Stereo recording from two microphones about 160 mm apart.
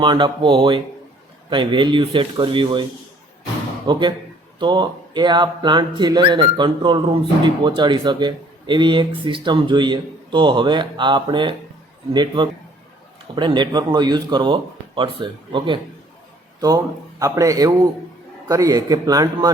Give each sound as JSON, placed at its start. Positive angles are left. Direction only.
{"t": 0.0, "sound": "speech", "side_deg": -30}
{"t": 3.9, "sound": "speech", "side_deg": -30}